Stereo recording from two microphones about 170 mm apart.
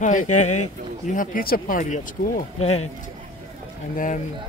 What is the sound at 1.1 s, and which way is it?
Speech, 55° left (ahead or behind).